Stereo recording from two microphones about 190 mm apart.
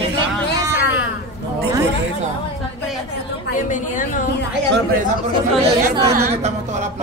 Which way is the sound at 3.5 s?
45° left (ahead or behind).